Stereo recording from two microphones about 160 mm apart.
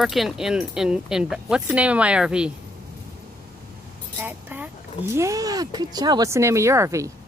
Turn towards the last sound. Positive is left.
turn(degrees=-20)  # may be behind; listen again after turning